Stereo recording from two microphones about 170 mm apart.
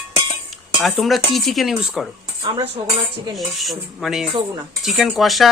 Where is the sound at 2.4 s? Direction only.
30° right (ahead or behind).